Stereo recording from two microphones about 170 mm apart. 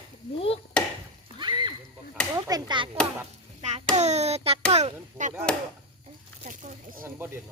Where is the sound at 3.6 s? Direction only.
40° right (ahead or behind).